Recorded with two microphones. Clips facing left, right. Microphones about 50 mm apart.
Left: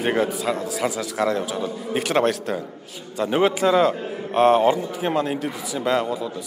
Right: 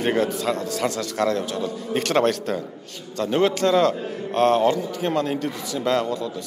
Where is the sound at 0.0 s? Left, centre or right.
Centre.